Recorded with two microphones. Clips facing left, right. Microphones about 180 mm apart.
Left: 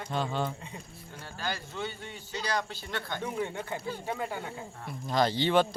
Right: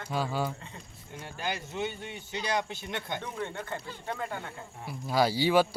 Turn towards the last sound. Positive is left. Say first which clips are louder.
# right 1 dB
turn(degrees=-10)  # may be behind; listen again after turning